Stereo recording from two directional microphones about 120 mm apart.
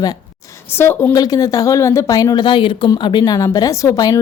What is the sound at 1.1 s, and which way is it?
Speech, 30° left (ahead or behind).